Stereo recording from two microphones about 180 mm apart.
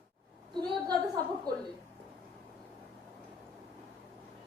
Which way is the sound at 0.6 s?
25° right (ahead or behind).